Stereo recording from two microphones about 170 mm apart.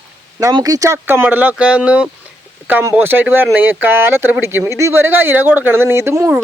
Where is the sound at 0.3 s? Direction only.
20° right (ahead or behind).